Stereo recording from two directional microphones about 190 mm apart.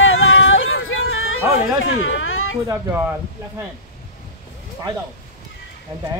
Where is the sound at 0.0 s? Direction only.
90° left.